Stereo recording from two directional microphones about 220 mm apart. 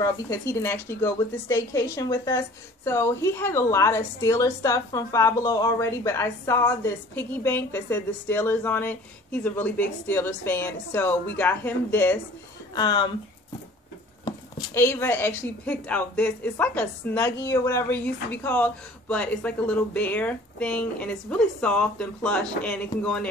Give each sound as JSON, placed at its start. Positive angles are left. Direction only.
{"t": 0.0, "sound": "a woman's voice", "side_deg": 15}
{"t": 12.7, "sound": "speech", "side_deg": 20}
{"t": 14.2, "sound": "a woman's voice", "side_deg": 15}